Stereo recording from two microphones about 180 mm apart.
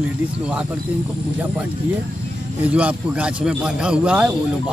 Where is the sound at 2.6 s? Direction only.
5° right (ahead or behind).